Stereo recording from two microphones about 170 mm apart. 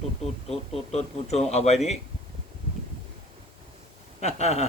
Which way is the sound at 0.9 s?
40° left (ahead or behind).